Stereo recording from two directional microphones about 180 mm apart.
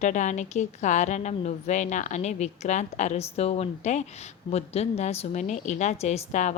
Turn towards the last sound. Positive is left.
turn(degrees=40)  # may be behind; listen again after turning